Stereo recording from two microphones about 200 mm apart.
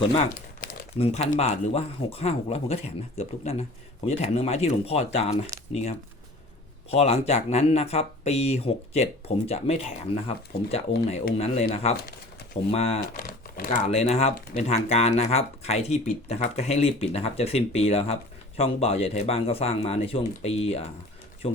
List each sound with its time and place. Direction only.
0.6 s crumpling: 45° left (ahead or behind)
0.9 s speech: 30° left (ahead or behind)
6.9 s speech: 30° left (ahead or behind)
13.0 s speech: 45° left (ahead or behind)
13.8 s speech: 30° left (ahead or behind)